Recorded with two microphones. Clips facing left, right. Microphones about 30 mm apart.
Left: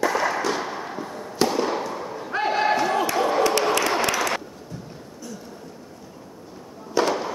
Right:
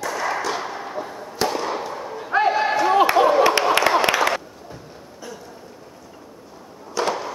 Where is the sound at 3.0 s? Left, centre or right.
Right.